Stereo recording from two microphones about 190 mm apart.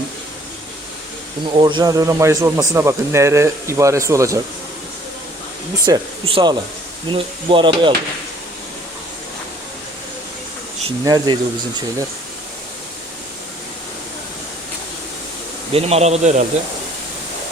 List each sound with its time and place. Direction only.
1.5 s speech: 25° right (ahead or behind)
5.8 s rub: 25° right (ahead or behind)
11.0 s rub: 20° right (ahead or behind)
15.7 s a man's voice: 35° right (ahead or behind)